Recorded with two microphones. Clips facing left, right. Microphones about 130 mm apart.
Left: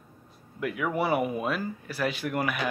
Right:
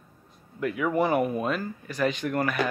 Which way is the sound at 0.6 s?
5° left (ahead or behind).